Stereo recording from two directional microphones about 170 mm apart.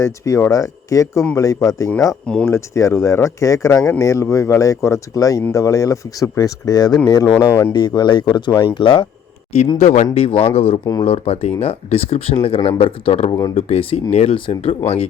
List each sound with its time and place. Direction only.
0.0 s speech: 15° left (ahead or behind)
2.2 s speech: 5° left (ahead or behind)
2.5 s speech: 15° left (ahead or behind)
9.7 s speech: 45° left (ahead or behind)